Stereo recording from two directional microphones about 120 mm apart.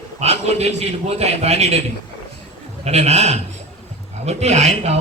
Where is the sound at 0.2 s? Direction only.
60° right (ahead or behind).